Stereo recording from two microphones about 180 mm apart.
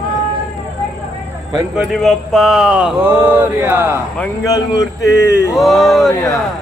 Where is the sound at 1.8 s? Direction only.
Centre (ahead or behind).